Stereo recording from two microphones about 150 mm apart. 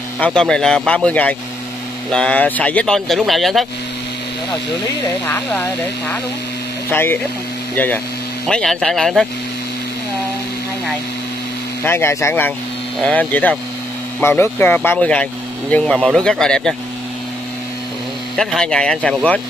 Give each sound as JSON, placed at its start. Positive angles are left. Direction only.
{"t": 0.2, "sound": "speech", "side_deg": 5}
{"t": 5.3, "sound": "speech", "side_deg": 10}
{"t": 11.8, "sound": "speech", "side_deg": 15}
{"t": 18.3, "sound": "speech", "side_deg": 0}